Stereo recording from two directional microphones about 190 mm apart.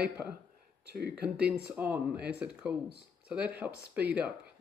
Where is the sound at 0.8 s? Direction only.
55° right (ahead or behind).